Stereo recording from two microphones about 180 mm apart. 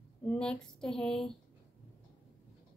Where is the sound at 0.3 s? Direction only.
5° left (ahead or behind).